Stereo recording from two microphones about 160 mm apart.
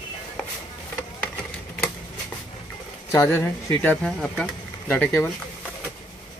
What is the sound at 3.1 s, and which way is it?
Speech, 15° left (ahead or behind).